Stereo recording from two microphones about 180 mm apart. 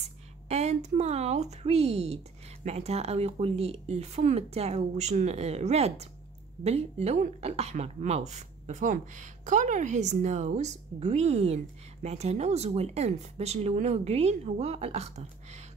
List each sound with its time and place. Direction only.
0.5 s speech: 40° right (ahead or behind)